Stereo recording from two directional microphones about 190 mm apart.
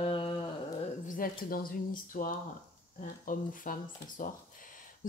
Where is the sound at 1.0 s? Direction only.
45° left (ahead or behind).